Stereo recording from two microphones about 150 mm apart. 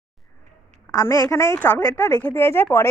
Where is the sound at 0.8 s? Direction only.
20° left (ahead or behind).